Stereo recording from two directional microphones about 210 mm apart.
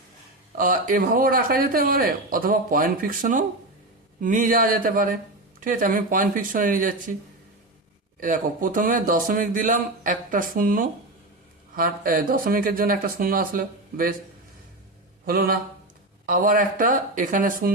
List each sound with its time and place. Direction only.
0.5 s a man's voice: 40° right (ahead or behind)
8.2 s a man's voice: 40° right (ahead or behind)
15.3 s a man's voice: 45° right (ahead or behind)